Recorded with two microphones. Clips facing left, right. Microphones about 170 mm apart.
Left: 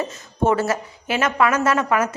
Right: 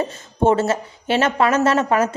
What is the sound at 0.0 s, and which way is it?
A woman's voice, 25° right (ahead or behind).